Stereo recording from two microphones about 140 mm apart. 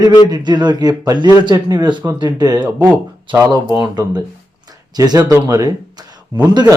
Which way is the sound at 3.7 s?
30° right (ahead or behind).